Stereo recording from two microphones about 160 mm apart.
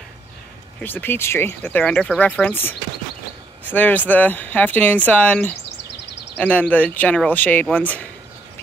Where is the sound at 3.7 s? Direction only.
10° left (ahead or behind).